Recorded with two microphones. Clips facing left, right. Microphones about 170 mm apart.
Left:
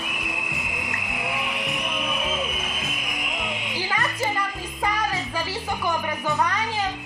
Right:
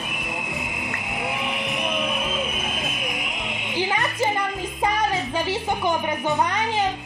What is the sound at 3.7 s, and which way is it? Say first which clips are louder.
Music: right 5 dB; 20° right (ahead or behind).